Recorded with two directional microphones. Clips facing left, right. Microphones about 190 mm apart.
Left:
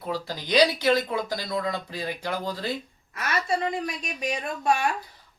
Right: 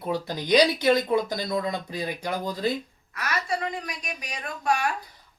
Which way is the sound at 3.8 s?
25° left (ahead or behind).